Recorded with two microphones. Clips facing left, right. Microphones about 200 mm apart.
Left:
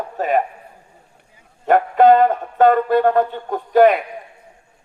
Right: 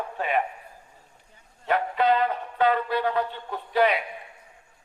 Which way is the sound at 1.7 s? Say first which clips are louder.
Left 10 dB; 50° left (ahead or behind).